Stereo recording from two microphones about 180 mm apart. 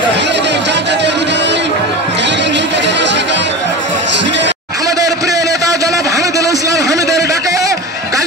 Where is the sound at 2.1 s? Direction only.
75° right (ahead or behind).